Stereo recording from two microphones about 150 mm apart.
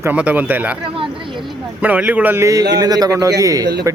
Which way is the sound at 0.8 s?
35° right (ahead or behind).